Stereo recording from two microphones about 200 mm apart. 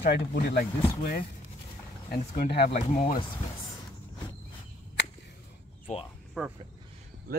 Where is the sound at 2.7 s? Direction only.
35° left (ahead or behind).